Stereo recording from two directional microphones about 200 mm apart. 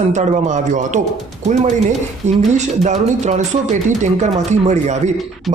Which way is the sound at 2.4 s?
35° right (ahead or behind).